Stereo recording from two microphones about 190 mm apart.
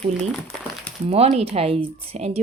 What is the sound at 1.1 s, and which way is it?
Speech, 35° right (ahead or behind).